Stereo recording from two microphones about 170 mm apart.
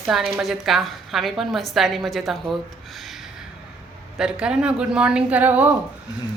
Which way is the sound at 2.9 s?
Centre (ahead or behind).